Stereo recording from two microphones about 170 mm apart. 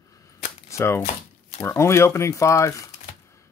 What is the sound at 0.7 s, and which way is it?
Shuffling cards, 15° left (ahead or behind).